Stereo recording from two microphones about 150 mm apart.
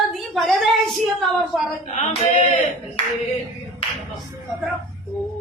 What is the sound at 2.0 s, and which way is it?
Singing, 50° left (ahead or behind).